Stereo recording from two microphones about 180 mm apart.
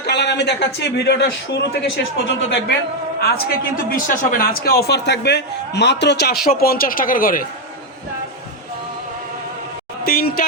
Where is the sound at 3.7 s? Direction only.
50° left (ahead or behind); by 6.4 s 70° left (ahead or behind).